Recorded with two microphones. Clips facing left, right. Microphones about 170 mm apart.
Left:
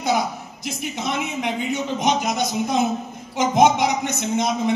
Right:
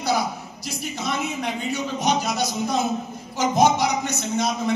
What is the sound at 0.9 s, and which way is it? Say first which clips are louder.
A man's voice: even; 20° left (ahead or behind).